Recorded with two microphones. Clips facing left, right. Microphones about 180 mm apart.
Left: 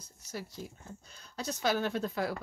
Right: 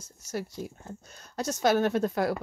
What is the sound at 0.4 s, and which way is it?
Speech, 55° right (ahead or behind).